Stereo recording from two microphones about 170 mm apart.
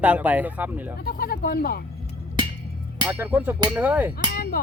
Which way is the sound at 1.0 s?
60° left (ahead or behind).